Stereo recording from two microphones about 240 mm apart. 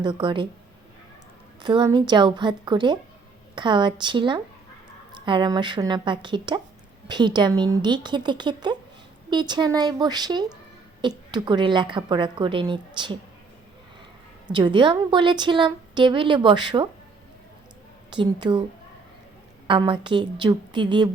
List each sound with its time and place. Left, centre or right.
0.0 s a woman's voice: right
1.6 s a woman's voice: centre
14.4 s a woman's voice: centre
18.1 s a woman's voice: centre
19.6 s a woman's voice: right